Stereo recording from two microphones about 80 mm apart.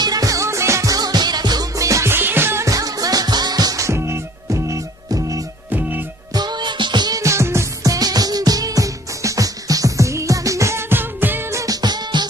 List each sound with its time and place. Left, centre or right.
0.0 s music: right
1.8 s music: right
2.0 s music: right
2.6 s music: right
3.8 s music: right
5.7 s music: right
6.3 s music: right
7.2 s music: right
11.5 s music: right